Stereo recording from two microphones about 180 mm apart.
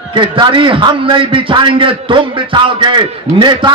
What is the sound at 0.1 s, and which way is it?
A man's voice, 25° right (ahead or behind).